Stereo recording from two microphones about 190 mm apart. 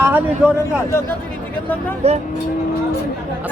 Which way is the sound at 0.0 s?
10° right (ahead or behind).